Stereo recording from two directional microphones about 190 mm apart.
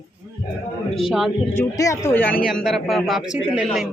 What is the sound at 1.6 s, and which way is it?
Speech, 15° left (ahead or behind).